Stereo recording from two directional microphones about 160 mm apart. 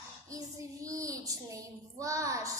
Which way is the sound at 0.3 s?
20° right (ahead or behind).